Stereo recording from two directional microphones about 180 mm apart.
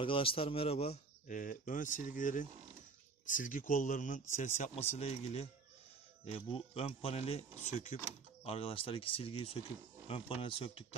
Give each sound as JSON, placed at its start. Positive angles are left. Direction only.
{"t": 0.0, "sound": "speech", "side_deg": 30}
{"t": 1.2, "sound": "speech", "side_deg": 45}
{"t": 8.5, "sound": "speech", "side_deg": 30}